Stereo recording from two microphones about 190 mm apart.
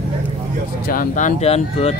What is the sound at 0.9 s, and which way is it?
Speech, 45° left (ahead or behind).